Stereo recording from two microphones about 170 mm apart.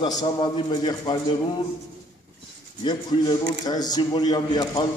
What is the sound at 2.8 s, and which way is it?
A man's voice, 25° left (ahead or behind).